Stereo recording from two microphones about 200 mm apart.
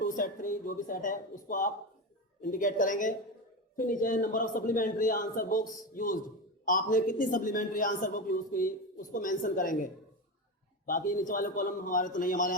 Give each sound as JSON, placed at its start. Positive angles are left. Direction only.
{"t": 0.0, "sound": "a man's voice", "side_deg": 40}